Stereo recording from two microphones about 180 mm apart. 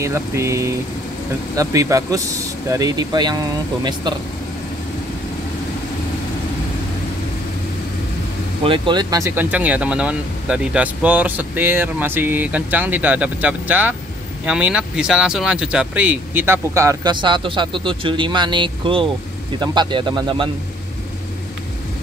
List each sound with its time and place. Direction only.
0.0 s speech: 15° right (ahead or behind)
8.6 s speech: 25° right (ahead or behind)